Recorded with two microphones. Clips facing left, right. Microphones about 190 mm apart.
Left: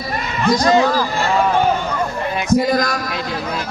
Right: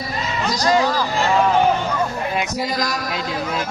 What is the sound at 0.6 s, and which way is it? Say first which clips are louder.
Speech: left 2 dB; 25° left (ahead or behind).